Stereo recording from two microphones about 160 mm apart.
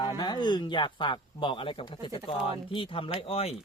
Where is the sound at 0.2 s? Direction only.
25° left (ahead or behind).